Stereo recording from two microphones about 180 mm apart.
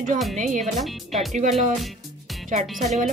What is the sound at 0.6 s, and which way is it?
Speech, centre (ahead or behind).